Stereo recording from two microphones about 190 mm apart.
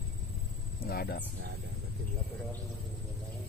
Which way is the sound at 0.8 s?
55° left (ahead or behind).